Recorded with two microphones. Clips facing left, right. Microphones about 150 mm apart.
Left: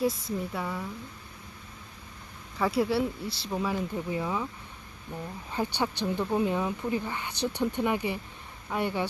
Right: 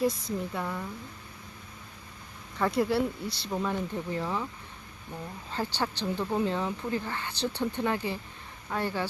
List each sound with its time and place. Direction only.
0.0 s speech: centre (ahead or behind)
2.6 s speech: 5° left (ahead or behind)
5.5 s speech: 15° left (ahead or behind)